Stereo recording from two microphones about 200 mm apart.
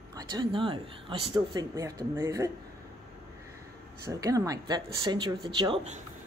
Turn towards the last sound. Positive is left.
turn(degrees=-30)  # may be behind; listen again after turning